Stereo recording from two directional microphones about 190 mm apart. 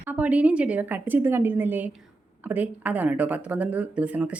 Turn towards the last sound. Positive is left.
turn(degrees=-5)  # may be behind; listen again after turning